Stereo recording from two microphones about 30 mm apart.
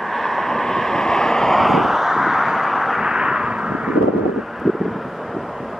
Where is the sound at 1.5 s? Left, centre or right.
Centre.